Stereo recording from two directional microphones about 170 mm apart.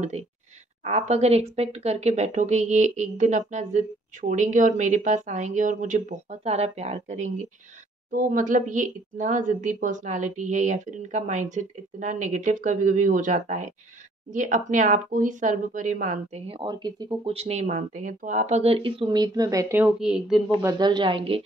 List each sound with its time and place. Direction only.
0.8 s speech: 40° right (ahead or behind)
16.4 s speech: 25° right (ahead or behind); by 20.5 s centre (ahead or behind)
20.6 s speech: 25° right (ahead or behind)